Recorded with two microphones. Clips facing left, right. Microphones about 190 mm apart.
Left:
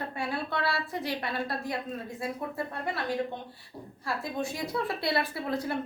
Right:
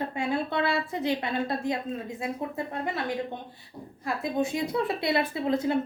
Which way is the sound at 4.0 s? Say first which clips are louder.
Right 5 dB; 20° right (ahead or behind).